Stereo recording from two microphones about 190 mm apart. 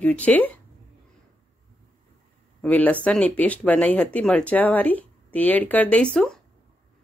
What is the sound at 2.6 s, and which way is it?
Speech, 10° left (ahead or behind).